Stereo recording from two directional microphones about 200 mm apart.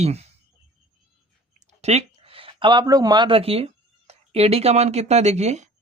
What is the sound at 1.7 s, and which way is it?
Speech, 35° right (ahead or behind).